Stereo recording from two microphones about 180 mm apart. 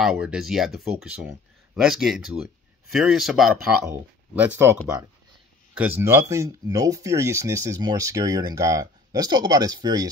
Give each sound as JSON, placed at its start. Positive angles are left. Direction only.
{"t": 0.0, "sound": "speech", "side_deg": -5}
{"t": 3.9, "sound": "speech", "side_deg": -10}
{"t": 5.8, "sound": "speech", "side_deg": -10}